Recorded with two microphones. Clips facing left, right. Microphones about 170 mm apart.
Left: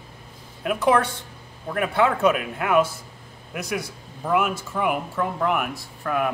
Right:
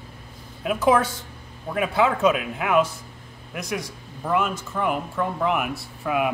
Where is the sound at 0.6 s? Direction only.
Centre (ahead or behind).